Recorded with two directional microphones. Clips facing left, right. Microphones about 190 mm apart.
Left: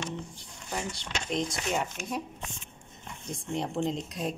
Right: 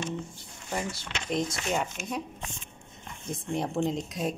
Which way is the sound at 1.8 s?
Centre (ahead or behind).